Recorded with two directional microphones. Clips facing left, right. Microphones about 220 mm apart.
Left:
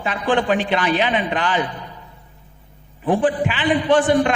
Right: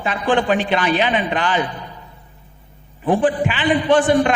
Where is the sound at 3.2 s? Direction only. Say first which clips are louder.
Right 1 dB; 15° right (ahead or behind).